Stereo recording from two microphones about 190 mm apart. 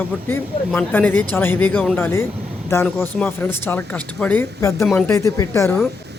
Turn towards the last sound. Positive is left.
turn(degrees=15)  # may be behind; listen again after turning